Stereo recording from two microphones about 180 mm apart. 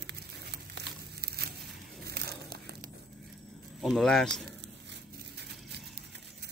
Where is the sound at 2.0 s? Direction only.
60° right (ahead or behind).